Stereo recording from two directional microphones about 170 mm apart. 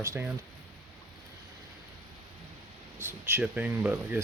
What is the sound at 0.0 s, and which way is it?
Speech, 15° right (ahead or behind).